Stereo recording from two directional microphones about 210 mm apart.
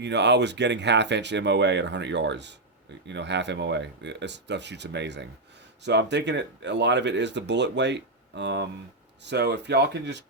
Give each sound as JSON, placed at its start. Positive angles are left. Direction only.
{"t": 0.0, "sound": "speech", "side_deg": -55}